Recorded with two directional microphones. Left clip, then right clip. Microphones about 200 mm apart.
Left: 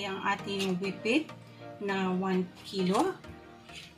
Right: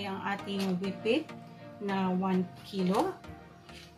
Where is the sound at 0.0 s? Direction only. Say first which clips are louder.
Left 3 dB; 15° left (ahead or behind).